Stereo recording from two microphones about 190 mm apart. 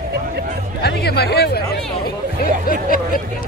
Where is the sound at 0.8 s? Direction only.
55° left (ahead or behind).